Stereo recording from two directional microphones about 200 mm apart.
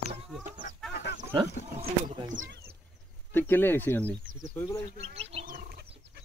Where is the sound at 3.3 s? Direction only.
10° left (ahead or behind).